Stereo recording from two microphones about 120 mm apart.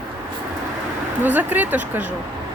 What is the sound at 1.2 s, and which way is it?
Speech, 15° right (ahead or behind).